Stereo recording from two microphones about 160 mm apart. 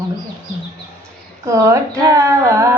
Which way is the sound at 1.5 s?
20° right (ahead or behind).